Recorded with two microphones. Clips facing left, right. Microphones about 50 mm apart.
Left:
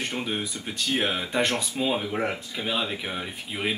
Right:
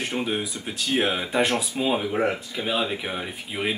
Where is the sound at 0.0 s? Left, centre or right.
Centre.